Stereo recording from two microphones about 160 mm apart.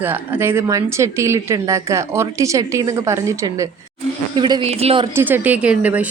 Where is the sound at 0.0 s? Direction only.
10° right (ahead or behind).